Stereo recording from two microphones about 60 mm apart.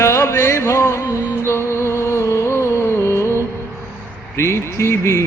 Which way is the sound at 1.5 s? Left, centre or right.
Left.